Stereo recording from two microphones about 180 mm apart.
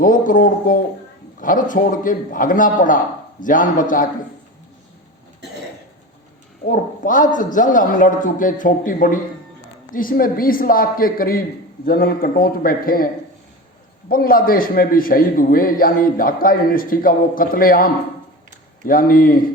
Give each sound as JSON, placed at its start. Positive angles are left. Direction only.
{"t": 0.0, "sound": "a man's voice", "side_deg": 50}
{"t": 6.7, "sound": "a man's voice", "side_deg": 45}
{"t": 14.1, "sound": "a man's voice", "side_deg": 55}